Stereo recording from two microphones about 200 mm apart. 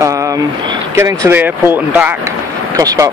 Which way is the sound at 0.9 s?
15° right (ahead or behind).